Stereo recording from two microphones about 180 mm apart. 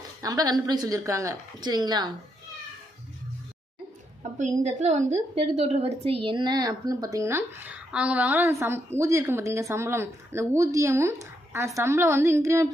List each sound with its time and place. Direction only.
0.2 s a woman's voice: 20° right (ahead or behind)
4.2 s a sound: 40° right (ahead or behind)
4.6 s a woman's voice: 40° right (ahead or behind); by 12.6 s 15° right (ahead or behind)